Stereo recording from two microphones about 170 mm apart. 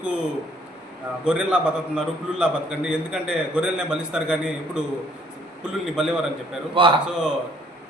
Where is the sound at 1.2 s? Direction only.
5° right (ahead or behind).